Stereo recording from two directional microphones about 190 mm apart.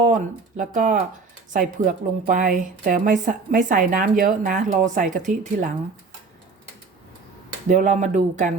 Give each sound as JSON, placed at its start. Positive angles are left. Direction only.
{"t": 0.0, "sound": "a woman's voice", "side_deg": -40}
{"t": 7.7, "sound": "speech", "side_deg": -40}